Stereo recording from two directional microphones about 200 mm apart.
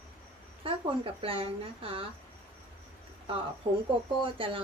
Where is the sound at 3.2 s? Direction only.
25° right (ahead or behind).